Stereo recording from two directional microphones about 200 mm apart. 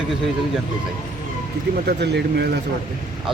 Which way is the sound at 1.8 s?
55° right (ahead or behind).